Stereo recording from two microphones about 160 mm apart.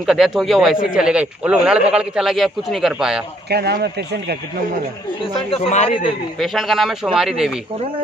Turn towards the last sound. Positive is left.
turn(degrees=-5)  # may be behind; listen again after turning